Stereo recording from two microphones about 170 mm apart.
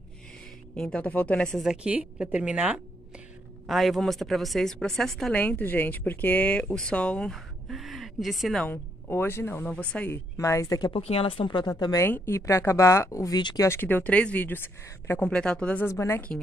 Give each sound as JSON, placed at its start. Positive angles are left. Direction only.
{"t": 0.7, "sound": "a woman's voice", "side_deg": 5}
{"t": 8.6, "sound": "speech", "side_deg": 15}
{"t": 11.0, "sound": "a woman's voice", "side_deg": 35}
{"t": 13.7, "sound": "speech", "side_deg": 10}